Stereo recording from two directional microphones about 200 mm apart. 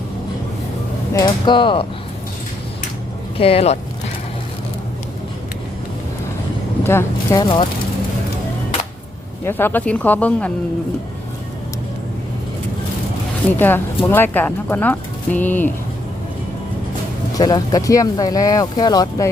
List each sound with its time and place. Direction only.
1.1 s speech: 25° left (ahead or behind)
3.3 s speech: 30° left (ahead or behind)
6.8 s speech: 10° left (ahead or behind)
7.4 s speech: 25° left (ahead or behind)
9.4 s speech: 10° left (ahead or behind)
13.6 s speech: 10° left (ahead or behind)
17.3 s speech: 20° left (ahead or behind)